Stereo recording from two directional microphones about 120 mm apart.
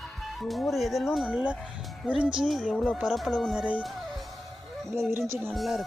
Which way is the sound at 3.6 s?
10° right (ahead or behind).